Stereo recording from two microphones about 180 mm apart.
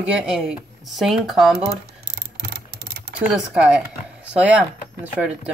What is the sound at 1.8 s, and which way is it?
Mechanisms, 65° right (ahead or behind).